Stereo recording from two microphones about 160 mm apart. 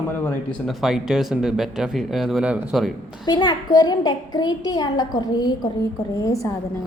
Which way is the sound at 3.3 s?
25° left (ahead or behind).